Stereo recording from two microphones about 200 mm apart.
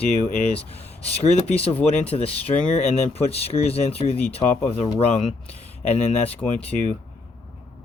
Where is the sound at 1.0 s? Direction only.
30° left (ahead or behind).